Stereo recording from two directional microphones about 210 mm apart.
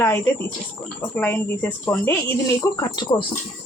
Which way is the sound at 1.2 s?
10° left (ahead or behind).